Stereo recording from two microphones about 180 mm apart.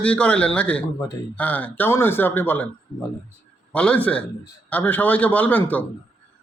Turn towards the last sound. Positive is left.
turn(degrees=10)  # may be behind; listen again after turning